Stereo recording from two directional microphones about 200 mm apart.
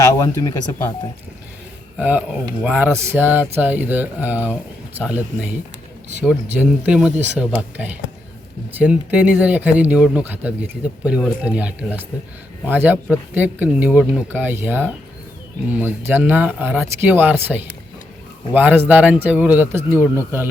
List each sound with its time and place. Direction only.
0.0 s speech: 15° left (ahead or behind)
2.0 s speech: 10° right (ahead or behind)